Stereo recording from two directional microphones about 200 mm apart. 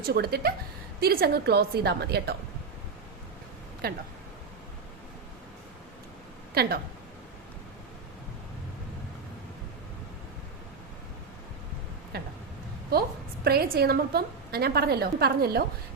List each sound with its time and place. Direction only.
0.0 s a woman's voice: 50° right (ahead or behind)
3.8 s a woman's voice: 50° right (ahead or behind)
6.5 s speech: 50° right (ahead or behind)
12.1 s a woman's voice: 50° right (ahead or behind)